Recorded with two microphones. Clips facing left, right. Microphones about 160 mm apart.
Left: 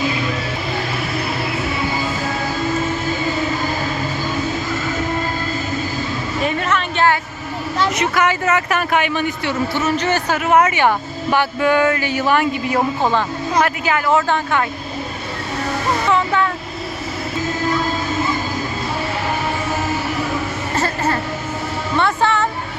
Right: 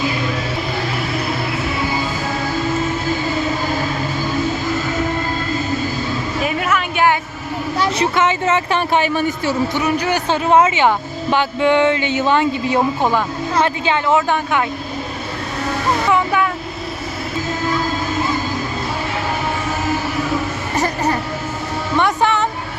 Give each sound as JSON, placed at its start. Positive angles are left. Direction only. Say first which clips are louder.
{"t": 6.4, "sound": "a sound", "louder": "left 1 dB", "side_deg": -5}
{"t": 7.9, "sound": "speech", "louder": "right 1 dB", "side_deg": -30}
{"t": 9.7, "sound": "a man's voice", "louder": "even", "side_deg": -15}
{"t": 10.2, "sound": "speech", "louder": "right 2 dB", "side_deg": -25}
{"t": 13.0, "sound": "a man's voice", "louder": "even", "side_deg": -10}
{"t": 13.6, "sound": "speech", "louder": "right 1 dB", "side_deg": -25}
{"t": 16.0, "sound": "a sound", "louder": "even", "side_deg": -10}
{"t": 20.7, "sound": "a sound", "louder": "right 1 dB", "side_deg": -15}
{"t": 21.9, "sound": "music", "louder": "right 1 dB", "side_deg": -15}